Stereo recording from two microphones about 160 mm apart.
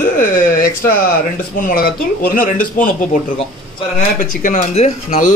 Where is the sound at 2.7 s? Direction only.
55° left (ahead or behind).